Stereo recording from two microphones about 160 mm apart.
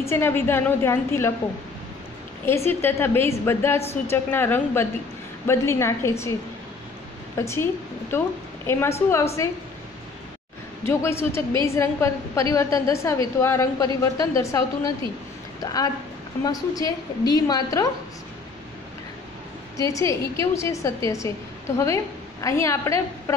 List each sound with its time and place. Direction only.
0.0 s a woman's voice: 15° left (ahead or behind)
2.4 s a woman's voice: 15° left (ahead or behind)
7.3 s a woman's voice: 15° left (ahead or behind)
8.6 s a woman's voice: 15° left (ahead or behind)
10.9 s a woman's voice: 15° left (ahead or behind)
15.6 s a woman's voice: 25° left (ahead or behind)
19.8 s a woman's voice: 20° left (ahead or behind)